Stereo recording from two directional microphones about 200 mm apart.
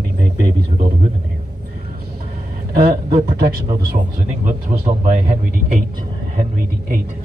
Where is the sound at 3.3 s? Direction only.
50° right (ahead or behind).